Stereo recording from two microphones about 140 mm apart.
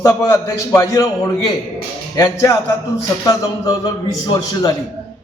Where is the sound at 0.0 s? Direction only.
20° left (ahead or behind).